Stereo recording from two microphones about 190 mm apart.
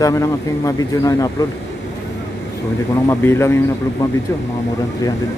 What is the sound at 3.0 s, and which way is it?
Speech, 15° left (ahead or behind).